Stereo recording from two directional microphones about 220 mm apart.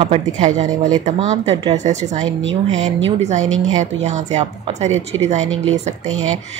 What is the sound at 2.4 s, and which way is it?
Speech, 60° right (ahead or behind).